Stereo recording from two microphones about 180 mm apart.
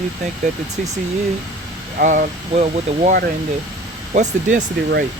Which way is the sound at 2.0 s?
45° right (ahead or behind).